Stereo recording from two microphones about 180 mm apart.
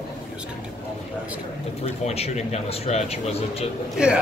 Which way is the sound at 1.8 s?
35° left (ahead or behind).